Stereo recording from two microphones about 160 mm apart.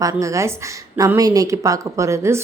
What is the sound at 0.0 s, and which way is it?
A woman's voice, 20° right (ahead or behind).